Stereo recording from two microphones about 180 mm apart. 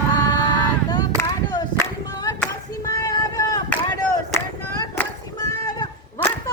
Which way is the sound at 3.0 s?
20° left (ahead or behind).